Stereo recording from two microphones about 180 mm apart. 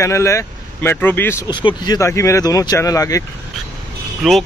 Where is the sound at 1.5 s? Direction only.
25° left (ahead or behind).